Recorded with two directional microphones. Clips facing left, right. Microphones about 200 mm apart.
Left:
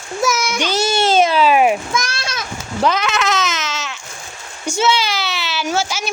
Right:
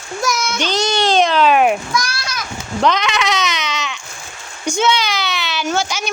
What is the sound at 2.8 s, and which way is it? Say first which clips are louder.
Speech: right 1 dB; 5° left (ahead or behind).